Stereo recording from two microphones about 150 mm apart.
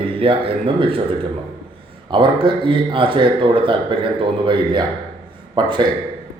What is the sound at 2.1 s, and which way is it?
Speech, 35° right (ahead or behind).